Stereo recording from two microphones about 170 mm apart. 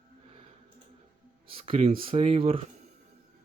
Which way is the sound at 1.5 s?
35° right (ahead or behind).